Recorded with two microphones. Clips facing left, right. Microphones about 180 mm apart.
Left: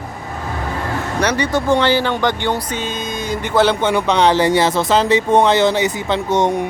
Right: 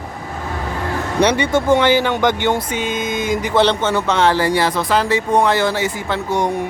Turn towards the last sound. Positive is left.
turn(degrees=20)  # may be behind; listen again after turning